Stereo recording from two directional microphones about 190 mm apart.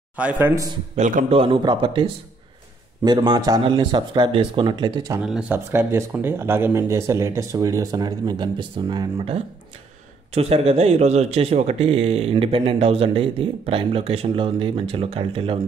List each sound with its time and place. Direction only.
0.1 s speech: 5° right (ahead or behind)
0.9 s speech: 40° right (ahead or behind); by 5.2 s 20° right (ahead or behind)
5.2 s a man's voice: 5° right (ahead or behind); by 15.6 s 30° right (ahead or behind)